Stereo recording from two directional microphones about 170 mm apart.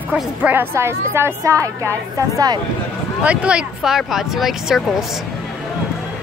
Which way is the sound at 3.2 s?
5° right (ahead or behind).